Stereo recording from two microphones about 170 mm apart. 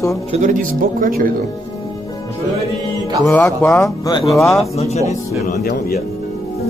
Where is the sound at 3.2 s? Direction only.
10° left (ahead or behind).